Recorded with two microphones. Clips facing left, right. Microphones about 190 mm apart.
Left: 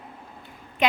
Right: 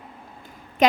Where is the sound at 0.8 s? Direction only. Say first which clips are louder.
Right 5 dB; 40° right (ahead or behind).